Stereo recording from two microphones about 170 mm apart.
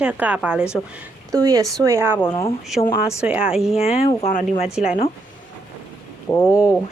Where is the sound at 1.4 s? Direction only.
20° right (ahead or behind).